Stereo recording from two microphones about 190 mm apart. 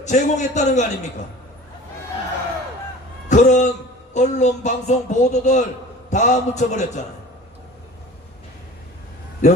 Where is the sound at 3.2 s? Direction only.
40° left (ahead or behind).